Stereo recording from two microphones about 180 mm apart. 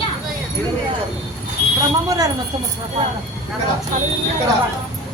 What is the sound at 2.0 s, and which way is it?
Speech, 20° right (ahead or behind).